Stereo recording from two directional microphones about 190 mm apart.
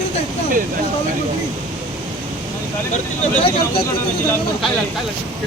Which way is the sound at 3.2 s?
30° left (ahead or behind).